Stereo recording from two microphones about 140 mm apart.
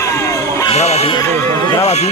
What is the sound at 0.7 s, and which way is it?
Speech, 50° left (ahead or behind).